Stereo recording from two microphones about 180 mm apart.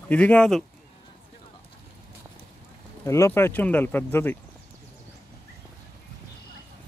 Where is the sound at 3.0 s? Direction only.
15° left (ahead or behind).